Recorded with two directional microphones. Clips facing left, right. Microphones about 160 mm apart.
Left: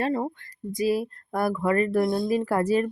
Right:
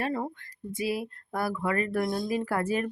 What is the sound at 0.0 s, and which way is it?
Speech, 30° left (ahead or behind).